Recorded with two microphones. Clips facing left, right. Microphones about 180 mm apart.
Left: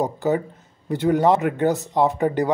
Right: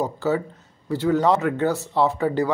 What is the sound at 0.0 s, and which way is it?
Speech, 15° left (ahead or behind).